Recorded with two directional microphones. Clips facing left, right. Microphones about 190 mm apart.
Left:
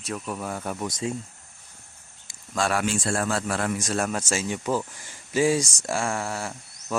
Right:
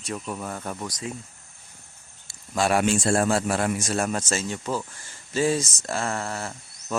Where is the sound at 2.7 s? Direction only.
25° right (ahead or behind).